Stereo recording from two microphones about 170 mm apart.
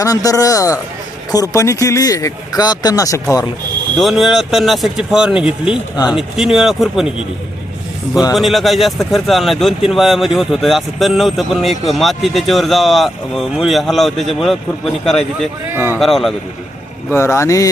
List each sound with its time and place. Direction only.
0.0 s speech: 20° left (ahead or behind)
3.9 s speech: centre (ahead or behind)
8.4 s speech: centre (ahead or behind)
15.7 s speech: 10° right (ahead or behind)
16.0 s speech: centre (ahead or behind)
17.1 s speech: 15° left (ahead or behind)